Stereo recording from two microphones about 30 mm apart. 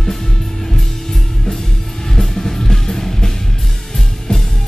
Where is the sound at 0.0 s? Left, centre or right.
Centre.